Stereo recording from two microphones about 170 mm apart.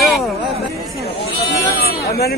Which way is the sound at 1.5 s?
70° left (ahead or behind).